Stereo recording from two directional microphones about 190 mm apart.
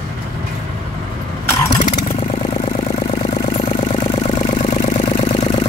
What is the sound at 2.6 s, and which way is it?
Vehicle, 30° left (ahead or behind).